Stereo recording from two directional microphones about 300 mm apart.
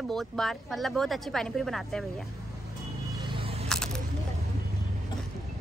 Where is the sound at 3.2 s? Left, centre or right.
Centre.